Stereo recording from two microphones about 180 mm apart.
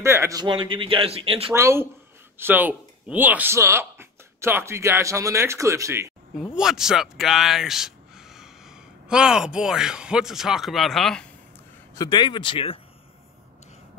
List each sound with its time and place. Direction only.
0.0 s a man's voice: 15° right (ahead or behind); by 1.5 s 30° right (ahead or behind)
1.5 s speech: 15° right (ahead or behind)
6.3 s speech: 5° right (ahead or behind)
11.9 s speech: 20° left (ahead or behind)